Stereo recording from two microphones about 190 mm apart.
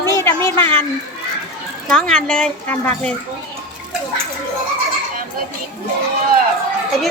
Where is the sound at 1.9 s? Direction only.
5° left (ahead or behind).